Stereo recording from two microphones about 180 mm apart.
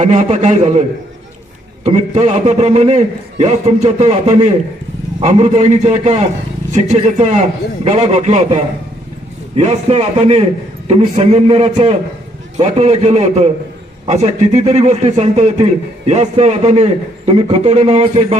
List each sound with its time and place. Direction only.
0.0 s a man's voice: 40° right (ahead or behind)